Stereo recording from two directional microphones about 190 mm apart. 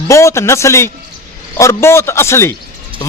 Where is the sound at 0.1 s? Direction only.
15° left (ahead or behind).